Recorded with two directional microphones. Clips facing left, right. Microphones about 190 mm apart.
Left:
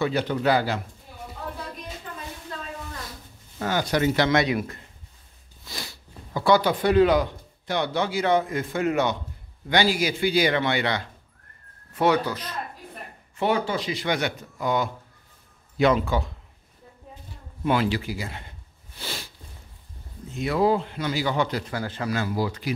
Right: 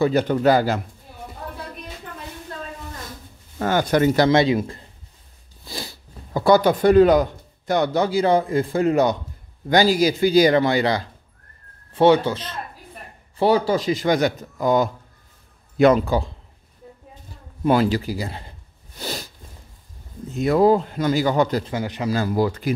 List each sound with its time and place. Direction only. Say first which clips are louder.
0.0 s speech: right 6 dB; 45° right (ahead or behind)
3.5 s speech: right 5 dB; 50° right (ahead or behind)
4.3 s speech: right 5 dB; 25° right (ahead or behind)
13.4 s speech: right 6 dB; 35° right (ahead or behind)
17.6 s speech: right 5 dB; 40° right (ahead or behind)
18.9 s a sound: right 6 dB; 40° right (ahead or behind)
20.3 s speech: right 6 dB; 45° right (ahead or behind)
21.6 s speech: right 4 dB; 20° right (ahead or behind)
22.1 s speech: right 6 dB; 45° right (ahead or behind)